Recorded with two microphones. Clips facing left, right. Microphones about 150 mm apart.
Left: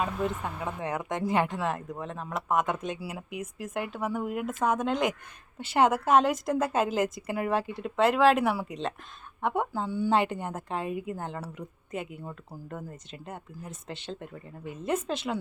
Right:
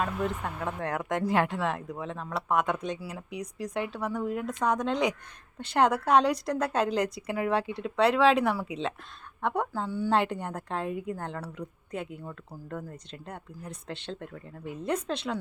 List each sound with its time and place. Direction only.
0.0 s speech: centre (ahead or behind)